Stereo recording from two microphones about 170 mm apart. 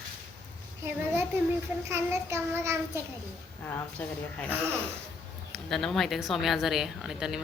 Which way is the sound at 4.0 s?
10° left (ahead or behind).